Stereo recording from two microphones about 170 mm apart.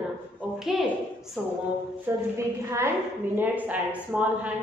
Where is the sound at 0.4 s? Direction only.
Centre (ahead or behind).